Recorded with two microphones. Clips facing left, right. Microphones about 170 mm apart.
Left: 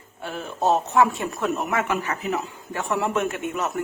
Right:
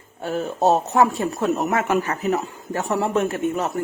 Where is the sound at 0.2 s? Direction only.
40° right (ahead or behind).